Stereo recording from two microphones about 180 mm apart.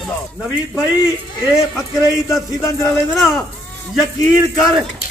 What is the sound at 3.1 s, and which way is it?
Speech, centre (ahead or behind).